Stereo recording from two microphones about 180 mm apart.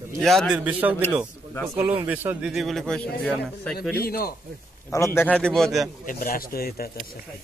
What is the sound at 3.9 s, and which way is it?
Speech, 55° left (ahead or behind).